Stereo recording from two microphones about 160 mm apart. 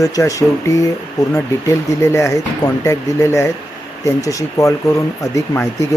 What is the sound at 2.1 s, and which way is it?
Speech, 20° left (ahead or behind).